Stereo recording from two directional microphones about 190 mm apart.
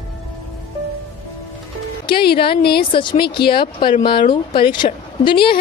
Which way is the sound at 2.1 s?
55° left (ahead or behind).